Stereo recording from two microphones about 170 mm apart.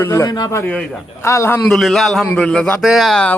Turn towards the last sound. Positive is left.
turn(degrees=0)  # may be behind; listen again after turning